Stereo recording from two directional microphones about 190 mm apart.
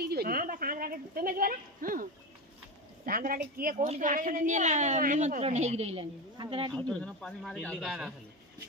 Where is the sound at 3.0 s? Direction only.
50° right (ahead or behind); by 6.7 s 25° right (ahead or behind).